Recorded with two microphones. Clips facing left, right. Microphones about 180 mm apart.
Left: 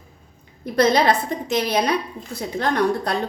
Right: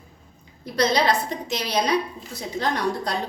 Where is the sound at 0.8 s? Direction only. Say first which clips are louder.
Left 4 dB; 55° left (ahead or behind).